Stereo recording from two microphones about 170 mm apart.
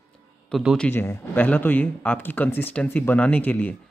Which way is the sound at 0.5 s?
Centre (ahead or behind).